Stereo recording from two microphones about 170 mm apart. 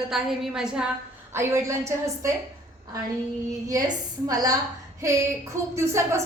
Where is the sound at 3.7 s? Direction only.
20° right (ahead or behind).